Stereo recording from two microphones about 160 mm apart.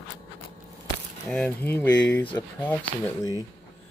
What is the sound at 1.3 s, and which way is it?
Speech, 5° left (ahead or behind).